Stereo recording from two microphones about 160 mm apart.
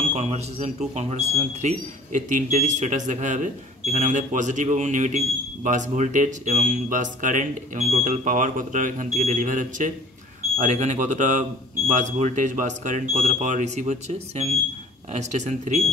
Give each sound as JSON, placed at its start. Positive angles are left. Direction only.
{"t": 0.1, "sound": "speech", "side_deg": -45}